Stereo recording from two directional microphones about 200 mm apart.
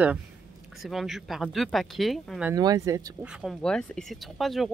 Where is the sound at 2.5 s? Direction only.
20° right (ahead or behind).